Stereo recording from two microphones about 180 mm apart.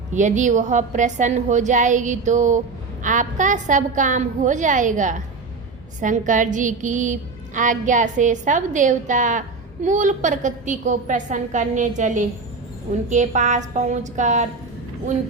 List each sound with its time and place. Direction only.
0.1 s a woman's voice: 45° right (ahead or behind)